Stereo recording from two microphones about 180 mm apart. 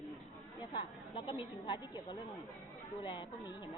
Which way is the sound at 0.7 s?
30° left (ahead or behind).